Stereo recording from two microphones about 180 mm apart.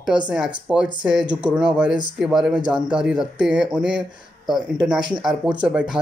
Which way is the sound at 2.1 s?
5° right (ahead or behind).